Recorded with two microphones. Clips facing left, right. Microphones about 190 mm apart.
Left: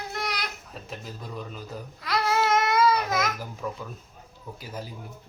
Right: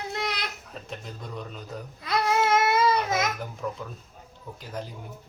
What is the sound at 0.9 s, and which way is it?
Speech, centre (ahead or behind).